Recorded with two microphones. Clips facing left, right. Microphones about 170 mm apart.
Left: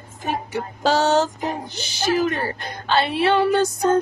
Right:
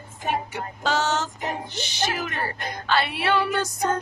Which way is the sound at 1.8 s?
30° left (ahead or behind).